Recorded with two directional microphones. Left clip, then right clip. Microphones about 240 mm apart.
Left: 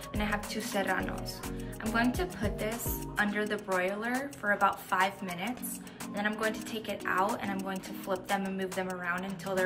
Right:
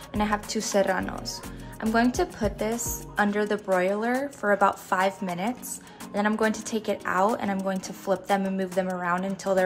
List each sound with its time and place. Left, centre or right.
0.2 s a woman's voice: centre